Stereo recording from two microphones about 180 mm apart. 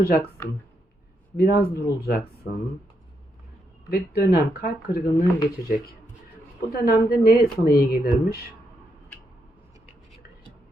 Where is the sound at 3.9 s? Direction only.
60° left (ahead or behind).